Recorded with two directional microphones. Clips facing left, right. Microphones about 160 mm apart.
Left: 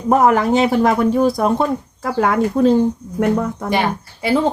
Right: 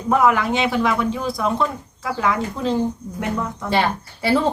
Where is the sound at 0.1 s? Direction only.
45° left (ahead or behind).